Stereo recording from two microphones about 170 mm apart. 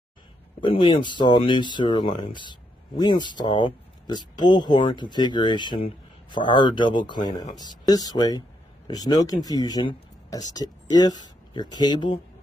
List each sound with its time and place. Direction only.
0.6 s speech: 30° left (ahead or behind)